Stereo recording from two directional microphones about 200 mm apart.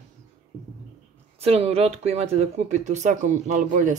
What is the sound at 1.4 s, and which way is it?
Speech, 30° right (ahead or behind).